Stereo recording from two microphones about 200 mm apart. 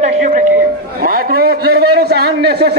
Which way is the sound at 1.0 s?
45° right (ahead or behind).